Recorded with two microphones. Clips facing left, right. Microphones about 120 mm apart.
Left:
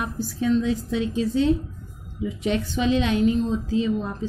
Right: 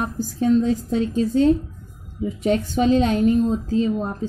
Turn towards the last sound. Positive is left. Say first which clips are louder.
# right 2 dB
turn(degrees=-45)  # may be behind; listen again after turning